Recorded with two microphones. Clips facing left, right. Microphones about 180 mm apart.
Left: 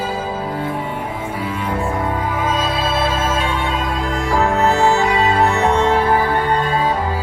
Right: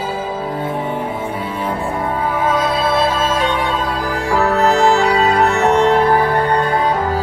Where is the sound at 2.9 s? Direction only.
30° right (ahead or behind).